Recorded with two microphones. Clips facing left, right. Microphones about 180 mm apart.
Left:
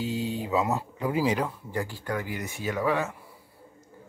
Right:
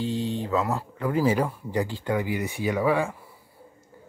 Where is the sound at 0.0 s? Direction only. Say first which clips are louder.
Right 2 dB; 10° left (ahead or behind).